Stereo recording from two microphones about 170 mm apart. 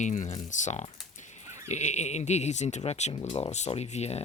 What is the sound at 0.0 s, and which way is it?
Speech, 45° left (ahead or behind).